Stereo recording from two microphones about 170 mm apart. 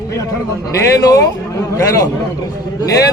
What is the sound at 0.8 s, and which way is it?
A man's voice, 20° left (ahead or behind).